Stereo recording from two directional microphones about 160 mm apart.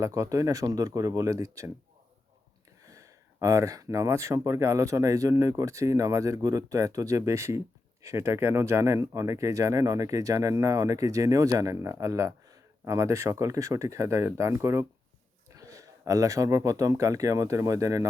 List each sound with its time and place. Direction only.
0.0 s speech: 20° right (ahead or behind)
2.8 s speech: 20° right (ahead or behind)